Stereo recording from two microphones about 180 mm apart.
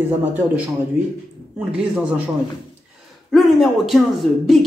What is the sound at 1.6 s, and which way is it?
Speech, 10° right (ahead or behind).